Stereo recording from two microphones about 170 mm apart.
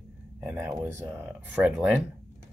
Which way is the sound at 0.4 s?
10° right (ahead or behind).